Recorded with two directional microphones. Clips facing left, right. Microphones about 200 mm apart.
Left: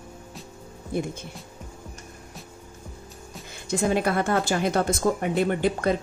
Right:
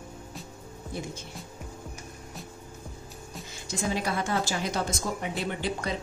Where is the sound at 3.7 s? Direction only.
55° left (ahead or behind).